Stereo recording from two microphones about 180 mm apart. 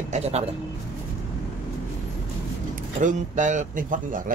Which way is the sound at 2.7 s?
45° right (ahead or behind).